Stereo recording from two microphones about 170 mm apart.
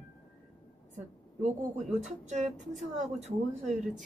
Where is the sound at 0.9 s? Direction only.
45° right (ahead or behind).